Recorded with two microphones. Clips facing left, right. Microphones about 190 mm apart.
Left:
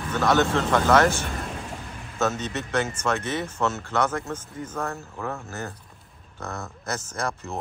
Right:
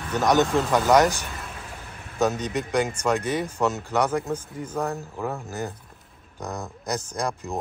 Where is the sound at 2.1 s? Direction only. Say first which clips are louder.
Right 3 dB; 15° right (ahead or behind).